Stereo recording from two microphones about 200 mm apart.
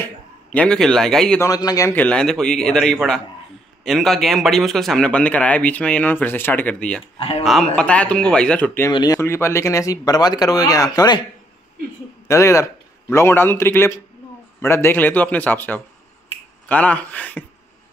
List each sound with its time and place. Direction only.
0.0 s a man's voice: 5° left (ahead or behind)
1.4 s a man's voice: 20° left (ahead or behind)
7.2 s speech: 30° left (ahead or behind)
7.7 s a man's voice: 5° left (ahead or behind)
12.3 s a man's voice: 15° left (ahead or behind)